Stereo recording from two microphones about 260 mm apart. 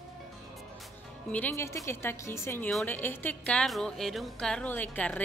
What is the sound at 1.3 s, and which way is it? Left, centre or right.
A woman's voice, centre.